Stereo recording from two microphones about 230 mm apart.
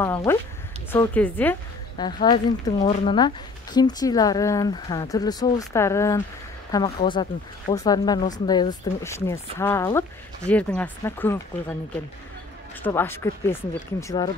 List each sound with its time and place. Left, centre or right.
0.0 s a woman's voice: centre
2.0 s speech: centre
12.8 s speech: centre